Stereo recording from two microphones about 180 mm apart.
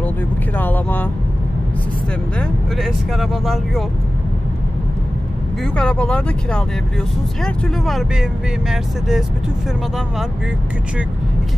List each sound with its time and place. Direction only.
0.6 s vehicle: 10° left (ahead or behind)
2.3 s speech: 5° left (ahead or behind)
5.6 s speech: 5° left (ahead or behind)